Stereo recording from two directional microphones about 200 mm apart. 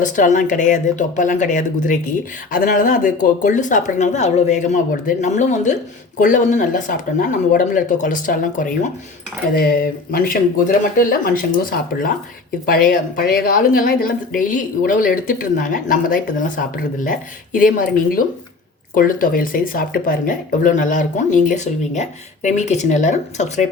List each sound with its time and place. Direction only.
0.0 s a woman's voice: 40° left (ahead or behind)